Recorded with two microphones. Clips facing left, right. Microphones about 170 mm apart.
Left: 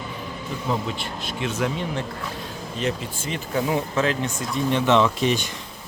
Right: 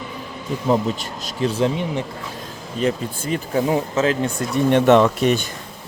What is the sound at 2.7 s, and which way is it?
Speech, 40° right (ahead or behind).